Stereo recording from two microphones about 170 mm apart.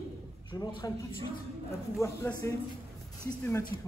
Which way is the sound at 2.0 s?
15° left (ahead or behind).